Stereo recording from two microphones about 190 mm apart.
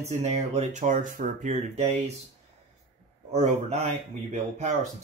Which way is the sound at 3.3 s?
35° right (ahead or behind).